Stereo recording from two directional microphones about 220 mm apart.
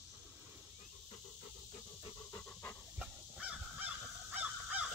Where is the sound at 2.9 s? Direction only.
5° right (ahead or behind).